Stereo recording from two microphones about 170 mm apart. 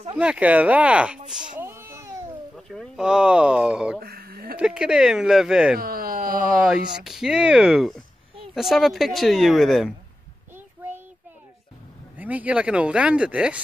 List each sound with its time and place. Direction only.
0.2 s speech: 5° right (ahead or behind)
2.5 s speech: centre (ahead or behind)
4.0 s a sound: 65° right (ahead or behind)
4.6 s a woman's voice: 5° right (ahead or behind)
5.8 s a sound: 60° right (ahead or behind)
6.7 s a woman's voice: centre (ahead or behind)
10.5 s child singing: 10° right (ahead or behind)
12.2 s speech: 10° right (ahead or behind)